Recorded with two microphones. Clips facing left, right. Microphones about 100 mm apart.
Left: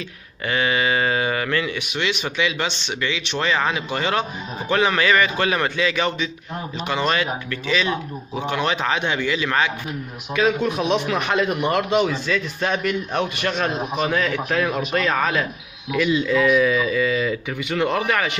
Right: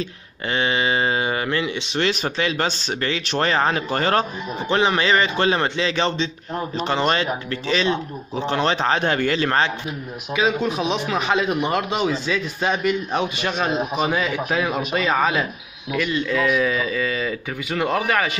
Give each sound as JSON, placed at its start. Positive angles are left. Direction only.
{"t": 0.5, "sound": "a man's voice", "side_deg": -25}
{"t": 2.0, "sound": "speech", "side_deg": -40}
{"t": 4.6, "sound": "a man's voice", "side_deg": -25}
{"t": 10.3, "sound": "speech", "side_deg": -5}
{"t": 15.9, "sound": "speech", "side_deg": 5}